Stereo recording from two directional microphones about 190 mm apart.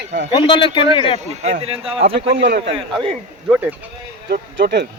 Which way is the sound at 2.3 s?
65° right (ahead or behind).